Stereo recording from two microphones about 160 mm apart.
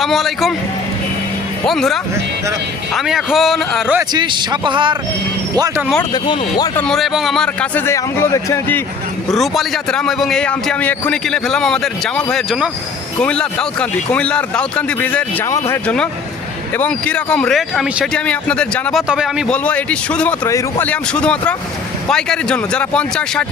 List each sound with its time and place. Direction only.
0.0 s a man's voice: centre (ahead or behind)
1.6 s a man's voice: centre (ahead or behind)
4.1 s a man's voice: 30° right (ahead or behind)
6.7 s a man's voice: 5° left (ahead or behind)
7.9 s speech: 15° left (ahead or behind)
9.3 s a man's voice: centre (ahead or behind)
13.1 s speech: 5° left (ahead or behind)
15.4 s a man's voice: 20° left (ahead or behind)
19.0 s a man's voice: 5° right (ahead or behind)
19.5 s speech: 10° left (ahead or behind)